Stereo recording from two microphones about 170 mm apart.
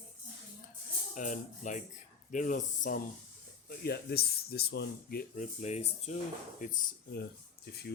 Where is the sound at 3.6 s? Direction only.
70° left (ahead or behind).